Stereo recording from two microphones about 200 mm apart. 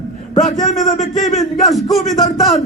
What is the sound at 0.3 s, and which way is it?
A man's voice, 40° left (ahead or behind).